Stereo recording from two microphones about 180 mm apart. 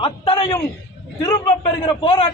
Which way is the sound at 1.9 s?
30° left (ahead or behind).